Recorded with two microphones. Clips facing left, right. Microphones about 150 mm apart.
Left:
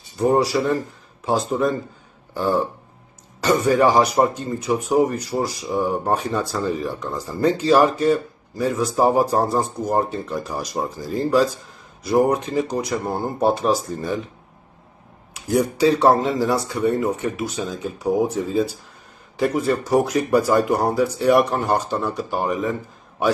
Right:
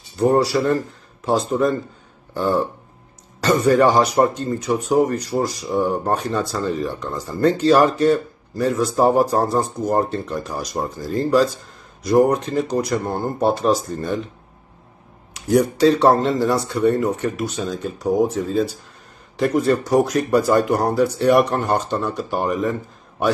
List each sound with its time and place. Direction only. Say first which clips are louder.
0.3 s speech: right 1 dB; 10° left (ahead or behind)
15.3 s speech: right 3 dB; 5° left (ahead or behind)